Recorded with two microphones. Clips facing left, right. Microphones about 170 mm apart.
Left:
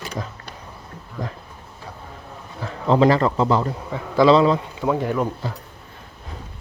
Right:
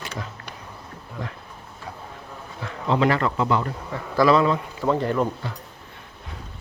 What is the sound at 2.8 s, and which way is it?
Speech, 35° left (ahead or behind).